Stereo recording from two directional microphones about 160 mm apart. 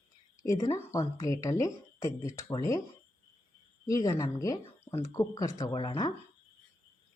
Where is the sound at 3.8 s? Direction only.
20° left (ahead or behind).